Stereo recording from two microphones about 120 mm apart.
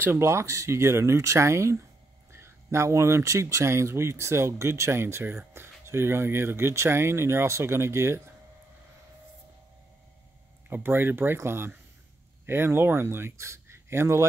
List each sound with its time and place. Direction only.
0.0 s speech: 20° right (ahead or behind)
10.7 s speech: 15° right (ahead or behind)